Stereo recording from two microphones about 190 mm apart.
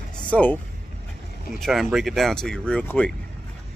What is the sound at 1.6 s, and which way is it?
Speech, centre (ahead or behind).